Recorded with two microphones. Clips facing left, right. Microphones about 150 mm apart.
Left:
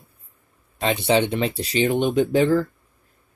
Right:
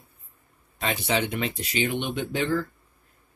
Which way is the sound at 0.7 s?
30° left (ahead or behind).